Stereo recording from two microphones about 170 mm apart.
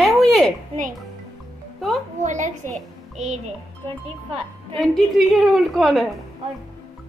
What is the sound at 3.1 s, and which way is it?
Speech, 40° right (ahead or behind).